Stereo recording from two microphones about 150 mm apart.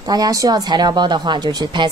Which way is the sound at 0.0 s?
25° right (ahead or behind).